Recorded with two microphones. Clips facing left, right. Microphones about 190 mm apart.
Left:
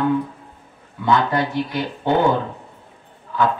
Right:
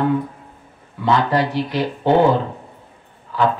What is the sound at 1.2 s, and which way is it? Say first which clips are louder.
Speech: right 2 dB; 30° right (ahead or behind).